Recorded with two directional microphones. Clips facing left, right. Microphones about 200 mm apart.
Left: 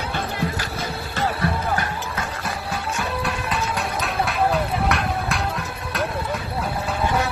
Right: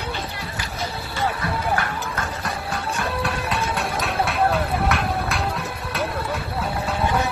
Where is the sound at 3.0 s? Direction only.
Centre (ahead or behind).